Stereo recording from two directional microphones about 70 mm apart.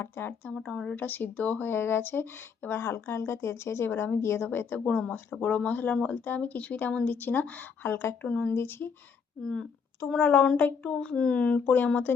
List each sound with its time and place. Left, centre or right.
0.0 s speech: left
0.5 s a child's voice: centre
0.9 s speech: left
4.9 s speech: left
8.3 s a child's voice: centre
8.5 s speech: left
9.4 s a child's voice: centre
10.2 s a child's voice: left